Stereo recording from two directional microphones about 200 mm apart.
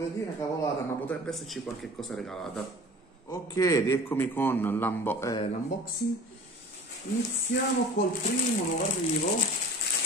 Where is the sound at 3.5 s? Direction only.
15° left (ahead or behind).